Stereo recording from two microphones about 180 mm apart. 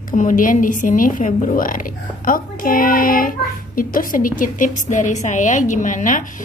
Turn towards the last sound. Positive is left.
turn(degrees=45)  # may be behind; listen again after turning